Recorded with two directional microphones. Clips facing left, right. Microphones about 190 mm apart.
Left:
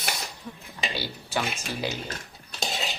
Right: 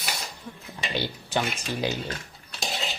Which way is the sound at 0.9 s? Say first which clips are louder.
Right 4 dB; 20° right (ahead or behind).